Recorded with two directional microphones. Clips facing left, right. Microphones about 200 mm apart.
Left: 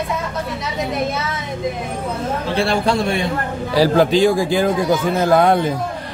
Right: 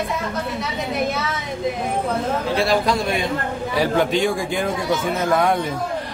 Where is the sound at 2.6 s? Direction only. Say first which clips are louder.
Left 3 dB; 30° left (ahead or behind).